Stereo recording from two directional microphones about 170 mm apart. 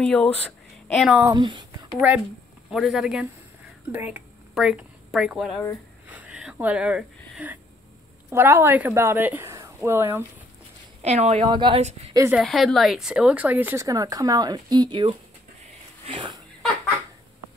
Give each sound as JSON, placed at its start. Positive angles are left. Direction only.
{"t": 0.0, "sound": "speech", "side_deg": 5}
{"t": 1.2, "sound": "speech", "side_deg": -25}
{"t": 2.0, "sound": "speech", "side_deg": -5}
{"t": 11.0, "sound": "speech", "side_deg": -40}
{"t": 11.4, "sound": "a woman's voice", "side_deg": -25}
{"t": 12.4, "sound": "a woman's voice", "side_deg": 0}